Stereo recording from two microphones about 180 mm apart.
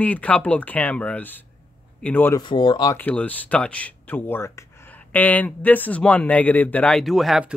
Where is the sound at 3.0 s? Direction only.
10° left (ahead or behind).